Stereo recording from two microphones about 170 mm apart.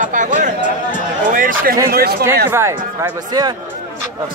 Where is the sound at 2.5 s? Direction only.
15° right (ahead or behind).